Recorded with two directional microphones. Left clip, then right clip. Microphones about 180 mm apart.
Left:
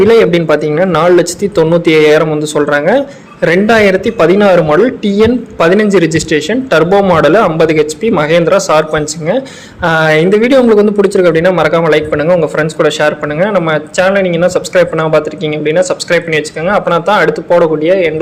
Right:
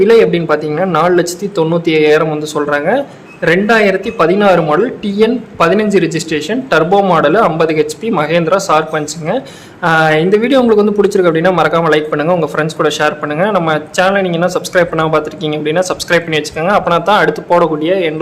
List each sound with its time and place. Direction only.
0.0 s speech: 20° left (ahead or behind); by 18.1 s 5° left (ahead or behind)